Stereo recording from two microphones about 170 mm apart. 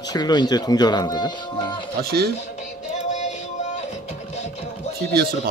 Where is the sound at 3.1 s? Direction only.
45° left (ahead or behind).